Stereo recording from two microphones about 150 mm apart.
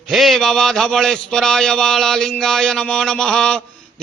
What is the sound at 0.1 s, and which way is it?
A man's voice, centre (ahead or behind).